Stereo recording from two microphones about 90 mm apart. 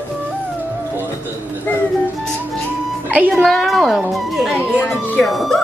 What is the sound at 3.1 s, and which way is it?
Speech, 20° right (ahead or behind).